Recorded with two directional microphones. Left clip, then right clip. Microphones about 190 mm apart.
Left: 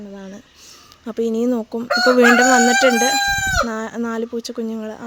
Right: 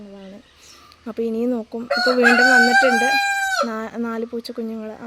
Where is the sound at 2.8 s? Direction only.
20° left (ahead or behind).